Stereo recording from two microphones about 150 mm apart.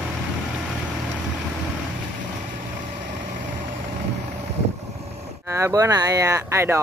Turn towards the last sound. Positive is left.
turn(degrees=-15)  # may be behind; listen again after turning